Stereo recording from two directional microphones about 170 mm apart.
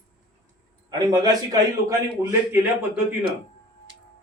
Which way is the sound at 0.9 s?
25° right (ahead or behind).